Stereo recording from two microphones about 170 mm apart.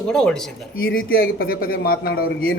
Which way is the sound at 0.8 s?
60° left (ahead or behind).